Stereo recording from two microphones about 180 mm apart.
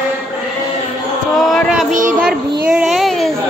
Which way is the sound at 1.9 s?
50° right (ahead or behind).